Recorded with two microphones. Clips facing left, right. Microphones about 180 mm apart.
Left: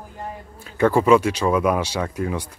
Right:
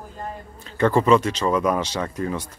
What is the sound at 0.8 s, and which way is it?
Speech, 10° left (ahead or behind).